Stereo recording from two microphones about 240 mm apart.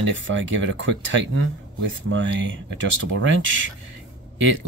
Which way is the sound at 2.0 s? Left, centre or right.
Right.